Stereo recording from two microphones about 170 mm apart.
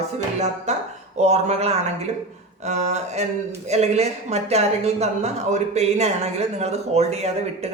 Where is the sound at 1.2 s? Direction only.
40° right (ahead or behind).